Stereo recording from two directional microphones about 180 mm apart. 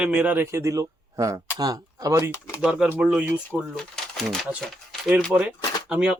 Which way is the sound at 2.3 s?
15° left (ahead or behind).